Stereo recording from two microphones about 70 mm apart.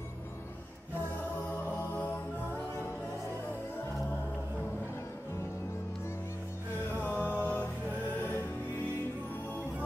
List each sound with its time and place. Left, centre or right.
7.0 s music: left